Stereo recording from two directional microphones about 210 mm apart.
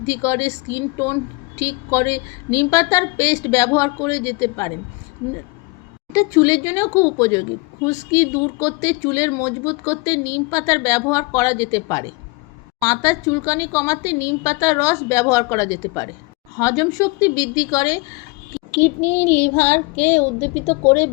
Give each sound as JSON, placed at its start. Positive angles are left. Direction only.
{"t": 0.1, "sound": "speech", "side_deg": 15}
{"t": 6.1, "sound": "speech", "side_deg": 15}